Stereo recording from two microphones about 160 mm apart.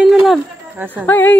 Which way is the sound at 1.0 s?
10° left (ahead or behind).